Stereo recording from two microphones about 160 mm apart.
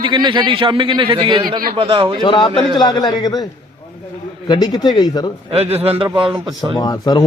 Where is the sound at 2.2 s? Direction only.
30° left (ahead or behind).